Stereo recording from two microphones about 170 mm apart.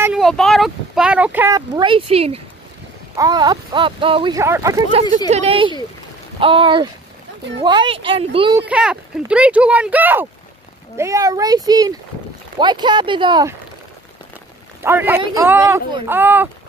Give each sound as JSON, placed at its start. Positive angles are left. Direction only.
{"t": 0.0, "sound": "speech", "side_deg": -5}
{"t": 1.8, "sound": "speech", "side_deg": -30}
{"t": 3.2, "sound": "speech", "side_deg": -20}
{"t": 4.4, "sound": "speech", "side_deg": -15}
{"t": 5.3, "sound": "speech", "side_deg": -35}
{"t": 8.5, "sound": "speech", "side_deg": -5}
{"t": 14.8, "sound": "speech", "side_deg": -15}